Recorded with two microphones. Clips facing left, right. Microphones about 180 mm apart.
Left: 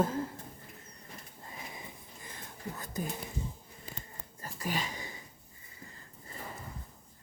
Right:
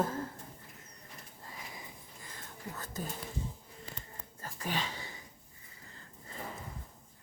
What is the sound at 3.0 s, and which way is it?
Speech, 15° left (ahead or behind).